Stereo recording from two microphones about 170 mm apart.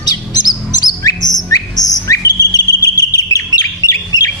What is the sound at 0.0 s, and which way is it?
Bird, 25° left (ahead or behind).